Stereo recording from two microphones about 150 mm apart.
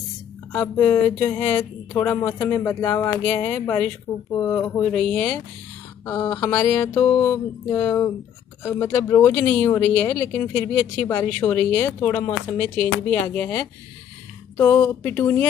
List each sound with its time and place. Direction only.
0.5 s speech: 15° left (ahead or behind)
4.9 s speech: 10° left (ahead or behind)